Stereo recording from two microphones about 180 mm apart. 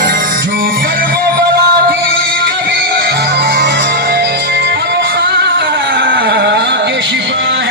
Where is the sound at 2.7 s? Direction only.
70° right (ahead or behind).